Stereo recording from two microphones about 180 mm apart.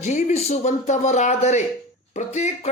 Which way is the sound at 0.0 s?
40° left (ahead or behind).